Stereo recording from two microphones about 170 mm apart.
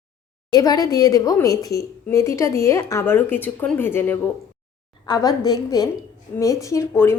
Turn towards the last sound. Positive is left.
turn(degrees=15)  # may be behind; listen again after turning